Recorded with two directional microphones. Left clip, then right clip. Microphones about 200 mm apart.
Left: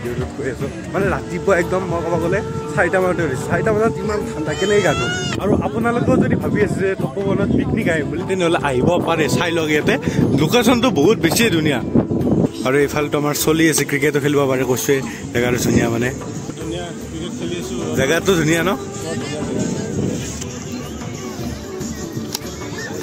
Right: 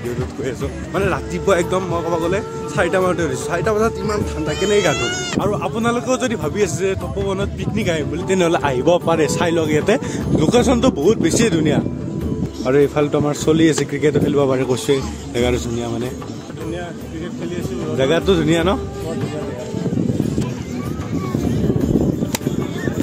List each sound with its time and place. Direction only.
0.9 s speech: 5° right (ahead or behind)
4.9 s speech: 15° right (ahead or behind)
5.6 s speech: 5° right (ahead or behind)
8.3 s speech: 40° right (ahead or behind)
8.6 s speech: 10° right (ahead or behind)
17.9 s speech: centre (ahead or behind)